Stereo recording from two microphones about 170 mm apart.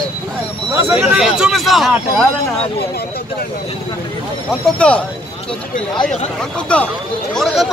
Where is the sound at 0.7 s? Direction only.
10° right (ahead or behind).